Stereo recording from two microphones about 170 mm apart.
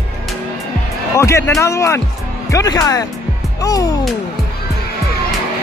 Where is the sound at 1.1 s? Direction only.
15° left (ahead or behind).